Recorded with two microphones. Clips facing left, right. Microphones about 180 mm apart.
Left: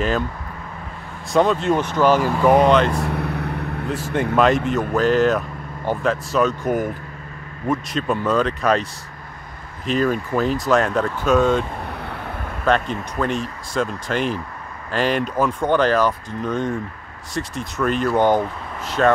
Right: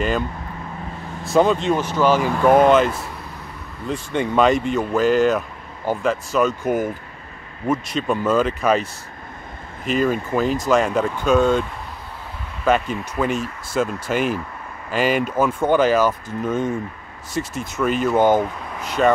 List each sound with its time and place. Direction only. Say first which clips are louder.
1.2 s speech: right 1 dB; centre (ahead or behind)
1.8 s speech: left 1 dB; 15° left (ahead or behind)
2.2 s speech: right 1 dB; centre (ahead or behind)
3.0 s vehicle: left 10 dB; 65° left (ahead or behind)
3.8 s speech: right 1 dB; centre (ahead or behind)
9.8 s speech: even; centre (ahead or behind)
11.9 s vehicle: left 6 dB; 65° left (ahead or behind)
12.6 s speech: right 1 dB; 5° right (ahead or behind)